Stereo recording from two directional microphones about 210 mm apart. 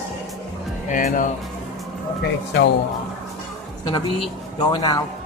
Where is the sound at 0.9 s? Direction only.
35° left (ahead or behind).